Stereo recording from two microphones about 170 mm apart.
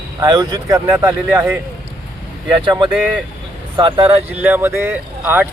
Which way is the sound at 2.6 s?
25° right (ahead or behind).